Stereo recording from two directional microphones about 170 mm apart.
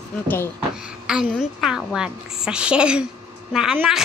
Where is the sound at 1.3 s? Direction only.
Centre (ahead or behind).